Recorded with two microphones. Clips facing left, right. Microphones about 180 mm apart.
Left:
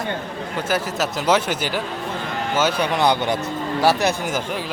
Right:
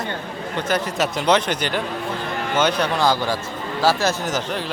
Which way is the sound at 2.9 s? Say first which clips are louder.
Left 1 dB; 20° left (ahead or behind).